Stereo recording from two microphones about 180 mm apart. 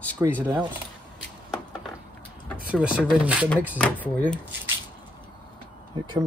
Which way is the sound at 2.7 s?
5° right (ahead or behind).